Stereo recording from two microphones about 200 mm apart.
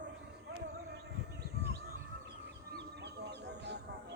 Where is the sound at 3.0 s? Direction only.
55° right (ahead or behind).